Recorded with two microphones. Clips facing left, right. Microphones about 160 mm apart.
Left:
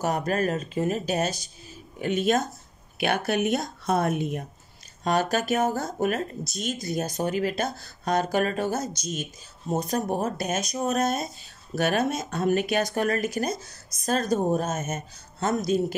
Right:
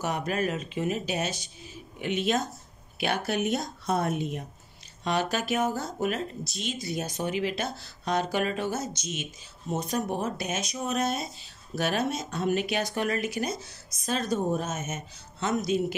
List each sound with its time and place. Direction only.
0.0 s speech: 40° left (ahead or behind)